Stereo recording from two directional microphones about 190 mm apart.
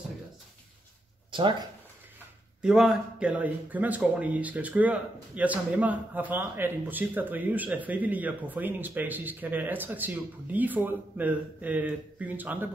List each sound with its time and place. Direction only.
1.3 s speech: 25° right (ahead or behind)
2.6 s a man's voice: 5° right (ahead or behind)